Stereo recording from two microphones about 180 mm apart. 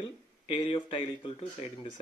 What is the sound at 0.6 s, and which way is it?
Speech, 30° left (ahead or behind).